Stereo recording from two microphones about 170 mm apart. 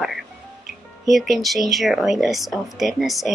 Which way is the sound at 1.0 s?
Centre (ahead or behind).